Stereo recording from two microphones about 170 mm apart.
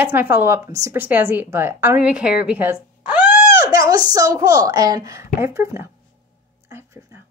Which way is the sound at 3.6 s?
20° right (ahead or behind).